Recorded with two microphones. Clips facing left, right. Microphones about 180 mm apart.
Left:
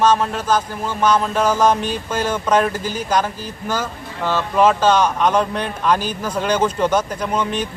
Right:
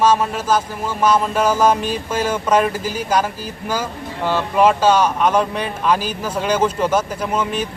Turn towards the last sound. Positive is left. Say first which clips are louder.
# even
turn(degrees=-5)  # may be behind; listen again after turning